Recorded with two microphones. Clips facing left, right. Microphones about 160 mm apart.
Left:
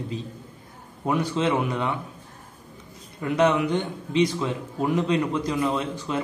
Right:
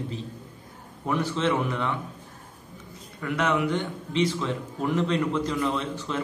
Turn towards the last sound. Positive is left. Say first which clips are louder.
# left 2 dB
turn(degrees=15)  # may be behind; listen again after turning